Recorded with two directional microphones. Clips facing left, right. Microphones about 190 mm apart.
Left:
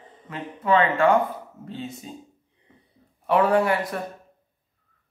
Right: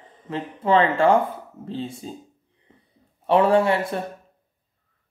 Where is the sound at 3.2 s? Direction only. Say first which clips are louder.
Right 2 dB; 30° right (ahead or behind).